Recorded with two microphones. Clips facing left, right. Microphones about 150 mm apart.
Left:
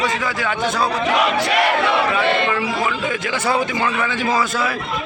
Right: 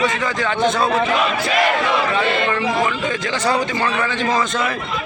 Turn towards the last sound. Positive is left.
turn(degrees=10)  # may be behind; listen again after turning